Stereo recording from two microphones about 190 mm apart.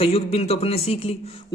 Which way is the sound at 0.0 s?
30° left (ahead or behind).